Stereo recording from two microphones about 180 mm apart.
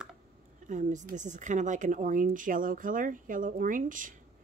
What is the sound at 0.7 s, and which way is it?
Speech, 45° right (ahead or behind).